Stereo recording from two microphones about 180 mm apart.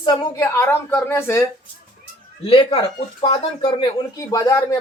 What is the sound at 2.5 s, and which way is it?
Speech, 30° left (ahead or behind).